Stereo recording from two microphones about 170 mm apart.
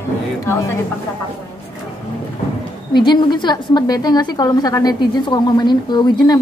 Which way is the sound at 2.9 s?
25° left (ahead or behind).